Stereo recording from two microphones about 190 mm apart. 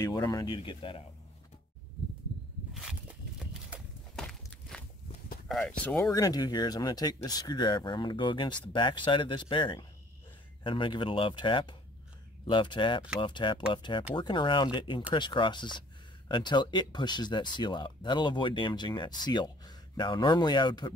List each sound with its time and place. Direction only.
0.0 s speech: 20° left (ahead or behind)
2.7 s a sound: centre (ahead or behind)
5.5 s speech: 5° left (ahead or behind); by 20.9 s 20° left (ahead or behind)